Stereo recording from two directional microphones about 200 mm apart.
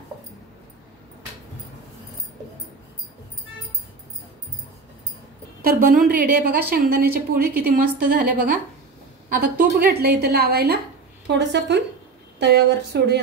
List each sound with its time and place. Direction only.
5.6 s a woman's voice: 45° right (ahead or behind)
9.4 s a woman's voice: 45° right (ahead or behind)